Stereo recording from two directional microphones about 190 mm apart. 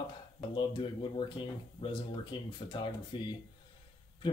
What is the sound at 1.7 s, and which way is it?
Speech, 25° left (ahead or behind).